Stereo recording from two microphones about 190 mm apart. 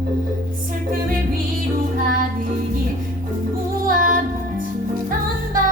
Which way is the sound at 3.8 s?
45° right (ahead or behind).